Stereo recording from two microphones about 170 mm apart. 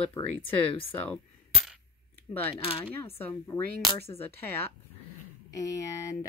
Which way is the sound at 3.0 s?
15° left (ahead or behind).